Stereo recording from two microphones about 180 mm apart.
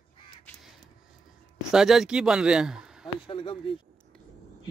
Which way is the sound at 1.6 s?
5° right (ahead or behind).